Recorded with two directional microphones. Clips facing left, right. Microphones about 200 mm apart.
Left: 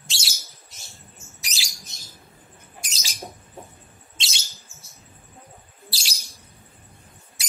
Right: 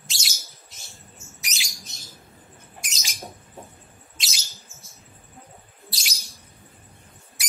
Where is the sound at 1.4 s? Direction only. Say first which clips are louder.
Even; 30° left (ahead or behind).